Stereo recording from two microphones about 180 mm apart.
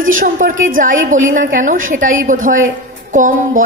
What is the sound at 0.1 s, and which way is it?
A woman's voice, 50° right (ahead or behind).